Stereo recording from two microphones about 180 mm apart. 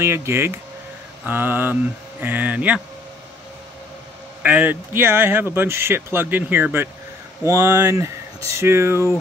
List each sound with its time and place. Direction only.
0.0 s speech: 15° right (ahead or behind)
4.4 s speech: 10° right (ahead or behind)